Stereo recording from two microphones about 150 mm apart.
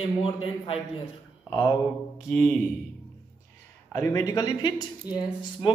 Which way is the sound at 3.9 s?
20° left (ahead or behind).